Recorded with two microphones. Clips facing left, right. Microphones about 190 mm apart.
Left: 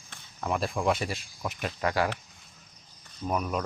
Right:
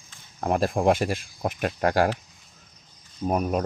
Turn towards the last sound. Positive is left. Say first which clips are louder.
# right 5 dB
turn(degrees=-40)  # may be behind; listen again after turning